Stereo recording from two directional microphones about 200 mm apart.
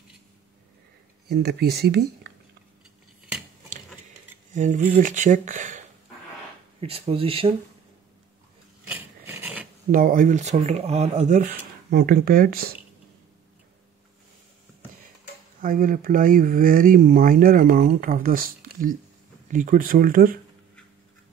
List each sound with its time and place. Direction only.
1.3 s speech: 55° right (ahead or behind)
4.6 s speech: 35° right (ahead or behind)
8.8 s filing: 10° right (ahead or behind)
9.8 s speech: 45° right (ahead or behind)
15.6 s speech: 45° right (ahead or behind)